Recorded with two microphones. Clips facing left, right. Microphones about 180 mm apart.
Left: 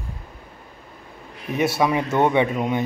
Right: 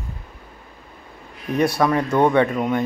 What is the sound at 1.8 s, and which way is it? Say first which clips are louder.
Speech: right 1 dB; 10° left (ahead or behind).